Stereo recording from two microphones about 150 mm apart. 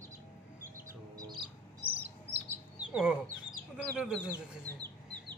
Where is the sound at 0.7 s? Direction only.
25° right (ahead or behind).